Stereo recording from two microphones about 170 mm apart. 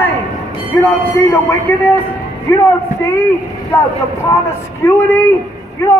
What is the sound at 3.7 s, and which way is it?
A man's voice, 15° left (ahead or behind).